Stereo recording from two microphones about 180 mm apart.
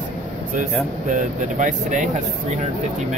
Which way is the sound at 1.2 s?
45° right (ahead or behind).